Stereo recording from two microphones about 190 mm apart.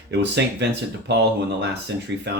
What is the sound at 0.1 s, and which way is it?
Speech, 65° right (ahead or behind).